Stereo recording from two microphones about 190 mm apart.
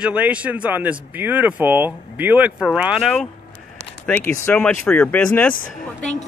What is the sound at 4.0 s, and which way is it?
Speech, 10° left (ahead or behind).